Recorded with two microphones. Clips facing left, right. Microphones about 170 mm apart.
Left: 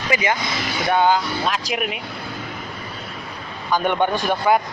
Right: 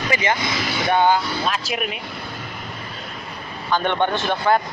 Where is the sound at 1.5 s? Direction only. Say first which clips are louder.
Left 1 dB; 15° left (ahead or behind).